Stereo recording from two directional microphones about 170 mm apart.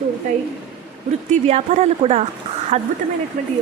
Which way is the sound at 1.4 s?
40° right (ahead or behind).